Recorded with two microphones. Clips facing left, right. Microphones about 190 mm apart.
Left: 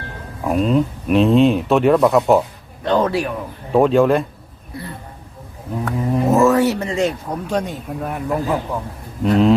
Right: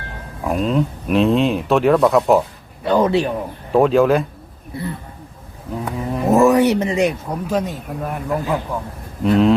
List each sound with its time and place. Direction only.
0.4 s speech: centre (ahead or behind)
2.8 s speech: 10° right (ahead or behind)
3.1 s a man's voice: 25° right (ahead or behind)
3.7 s speech: centre (ahead or behind)
4.7 s a man's voice: 25° right (ahead or behind)
6.1 s speech: centre (ahead or behind)
6.4 s speech: 15° right (ahead or behind); by 9.6 s centre (ahead or behind)